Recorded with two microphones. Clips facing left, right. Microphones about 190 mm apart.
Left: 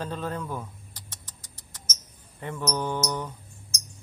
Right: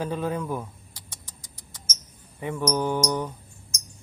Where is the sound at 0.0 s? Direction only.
10° right (ahead or behind).